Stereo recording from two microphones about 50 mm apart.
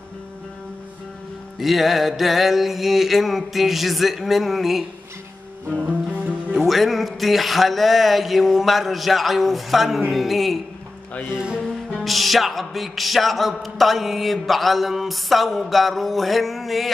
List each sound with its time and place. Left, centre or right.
1.6 s music: centre
5.9 s music: right
6.5 s music: centre
12.0 s music: centre